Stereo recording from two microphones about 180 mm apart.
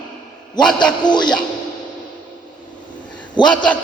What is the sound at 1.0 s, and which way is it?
Music, 25° left (ahead or behind).